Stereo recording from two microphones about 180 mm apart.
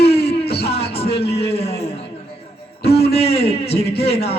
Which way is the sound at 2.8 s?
65° left (ahead or behind).